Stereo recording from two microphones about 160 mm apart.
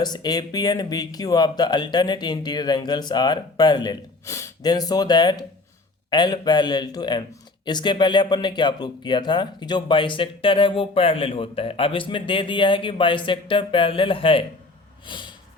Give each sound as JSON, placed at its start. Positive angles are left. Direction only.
{"t": 0.0, "sound": "speech", "side_deg": 25}
{"t": 15.0, "sound": "snort", "side_deg": 30}